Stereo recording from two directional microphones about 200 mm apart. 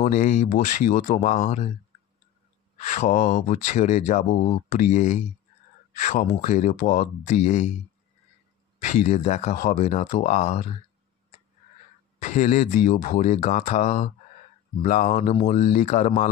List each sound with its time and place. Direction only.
0.0 s speech: 35° left (ahead or behind)
2.9 s speech: 40° left (ahead or behind)
8.8 s speech: 35° left (ahead or behind)
12.2 s speech: 40° left (ahead or behind)